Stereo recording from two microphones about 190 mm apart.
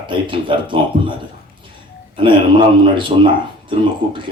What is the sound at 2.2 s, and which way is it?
Speech, 25° right (ahead or behind).